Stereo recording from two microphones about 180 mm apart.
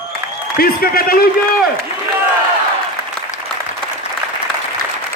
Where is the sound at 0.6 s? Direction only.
55° left (ahead or behind).